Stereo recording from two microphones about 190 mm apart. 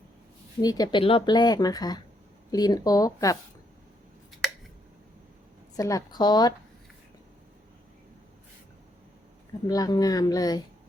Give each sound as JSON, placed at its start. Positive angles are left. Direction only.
{"t": 0.6, "sound": "speech", "side_deg": 20}
{"t": 5.7, "sound": "speech", "side_deg": 20}
{"t": 9.6, "sound": "speech", "side_deg": 20}